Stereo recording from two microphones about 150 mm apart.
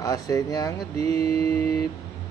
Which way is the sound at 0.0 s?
25° left (ahead or behind).